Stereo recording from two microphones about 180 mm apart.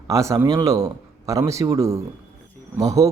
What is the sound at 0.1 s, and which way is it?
A man's voice, 15° right (ahead or behind).